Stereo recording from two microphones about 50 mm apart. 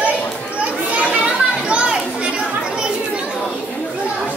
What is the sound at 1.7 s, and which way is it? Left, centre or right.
Children playing, centre.